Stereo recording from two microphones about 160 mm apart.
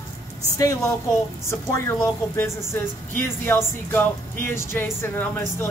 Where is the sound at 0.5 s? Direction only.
20° left (ahead or behind).